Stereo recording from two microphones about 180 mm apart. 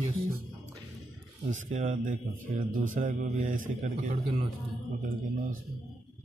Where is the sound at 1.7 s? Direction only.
45° right (ahead or behind).